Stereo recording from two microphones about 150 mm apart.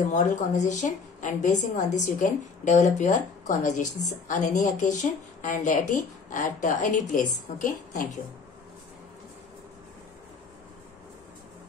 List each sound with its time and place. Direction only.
0.0 s a woman's voice: 55° left (ahead or behind)